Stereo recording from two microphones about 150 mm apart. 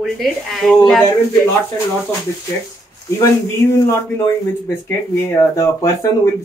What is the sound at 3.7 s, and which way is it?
Speech, 20° left (ahead or behind).